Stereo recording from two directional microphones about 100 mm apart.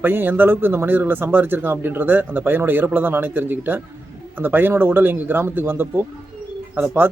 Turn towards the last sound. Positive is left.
turn(degrees=-20)  # may be behind; listen again after turning